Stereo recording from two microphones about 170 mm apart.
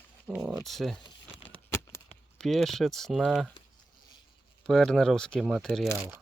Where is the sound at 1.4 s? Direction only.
15° left (ahead or behind).